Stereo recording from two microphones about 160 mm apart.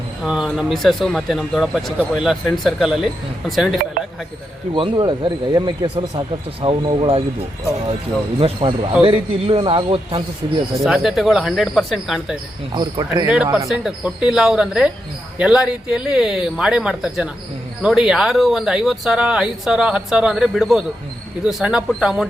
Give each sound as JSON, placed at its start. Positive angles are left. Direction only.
{"t": 0.3, "sound": "speech", "side_deg": -5}
{"t": 4.7, "sound": "speech", "side_deg": -30}
{"t": 8.4, "sound": "speech", "side_deg": -35}
{"t": 10.8, "sound": "speech", "side_deg": 0}
{"t": 12.7, "sound": "speech", "side_deg": -30}
{"t": 13.2, "sound": "speech", "side_deg": -5}